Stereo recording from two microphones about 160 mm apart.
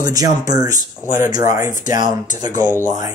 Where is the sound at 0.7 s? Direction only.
55° left (ahead or behind).